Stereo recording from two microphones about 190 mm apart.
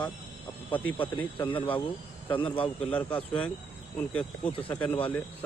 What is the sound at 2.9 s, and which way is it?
Speech, 10° left (ahead or behind).